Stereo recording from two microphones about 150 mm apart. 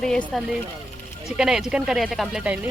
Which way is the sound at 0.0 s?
5° left (ahead or behind).